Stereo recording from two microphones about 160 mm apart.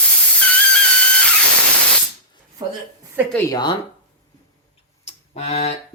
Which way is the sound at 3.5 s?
25° left (ahead or behind).